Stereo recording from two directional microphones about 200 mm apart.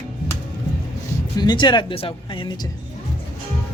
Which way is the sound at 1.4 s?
20° left (ahead or behind).